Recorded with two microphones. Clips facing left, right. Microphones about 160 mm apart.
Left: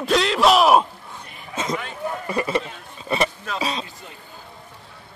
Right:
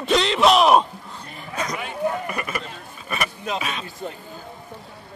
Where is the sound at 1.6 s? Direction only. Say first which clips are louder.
Right 1 dB; 25° left (ahead or behind).